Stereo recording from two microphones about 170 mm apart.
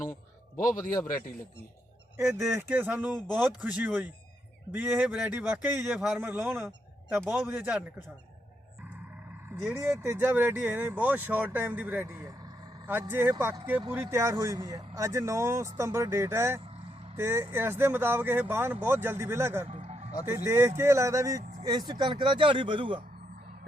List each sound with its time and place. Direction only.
0.5 s a man's voice: 50° left (ahead or behind)
2.1 s speech: 15° right (ahead or behind)
10.0 s speech: 15° right (ahead or behind)
19.6 s music: 40° right (ahead or behind)
20.2 s speech: 15° right (ahead or behind); by 23.0 s 30° right (ahead or behind)